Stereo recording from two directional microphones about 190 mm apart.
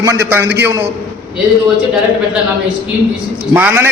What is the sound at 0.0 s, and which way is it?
Speech, 15° right (ahead or behind).